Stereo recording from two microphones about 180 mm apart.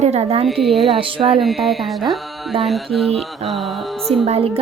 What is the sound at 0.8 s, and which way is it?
Speech, 30° right (ahead or behind).